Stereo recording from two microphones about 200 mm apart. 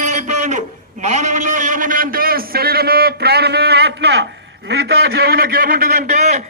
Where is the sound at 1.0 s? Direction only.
35° right (ahead or behind).